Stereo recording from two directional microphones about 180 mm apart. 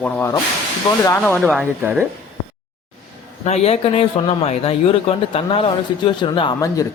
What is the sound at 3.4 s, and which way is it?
Speech, 35° left (ahead or behind).